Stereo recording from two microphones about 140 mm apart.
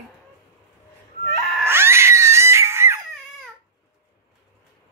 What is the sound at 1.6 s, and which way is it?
Cat, 15° right (ahead or behind).